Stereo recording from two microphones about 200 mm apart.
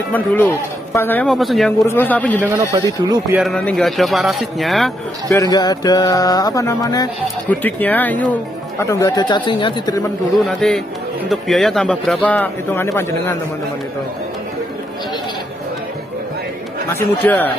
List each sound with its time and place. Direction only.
0.1 s speech: 10° left (ahead or behind)
2.7 s speech: 20° right (ahead or behind)
3.3 s speech: 5° left (ahead or behind)
5.3 s music: 20° left (ahead or behind)
7.4 s speech: 10° left (ahead or behind)
10.3 s speech: centre (ahead or behind)
16.9 s speech: 10° left (ahead or behind)